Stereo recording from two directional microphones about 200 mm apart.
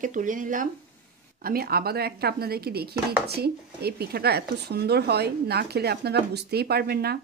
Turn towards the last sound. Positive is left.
turn(degrees=-50)  # may be behind; listen again after turning